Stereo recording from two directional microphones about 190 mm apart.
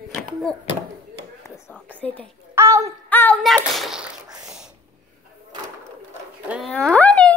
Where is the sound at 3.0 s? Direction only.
10° left (ahead or behind).